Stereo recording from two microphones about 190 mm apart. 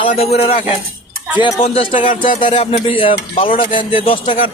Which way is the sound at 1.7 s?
40° left (ahead or behind).